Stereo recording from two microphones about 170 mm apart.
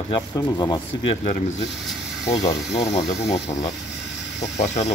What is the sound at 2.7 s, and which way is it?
Speech, 40° left (ahead or behind).